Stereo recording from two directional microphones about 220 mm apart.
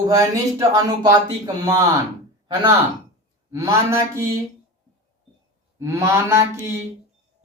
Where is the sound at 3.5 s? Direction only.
10° right (ahead or behind).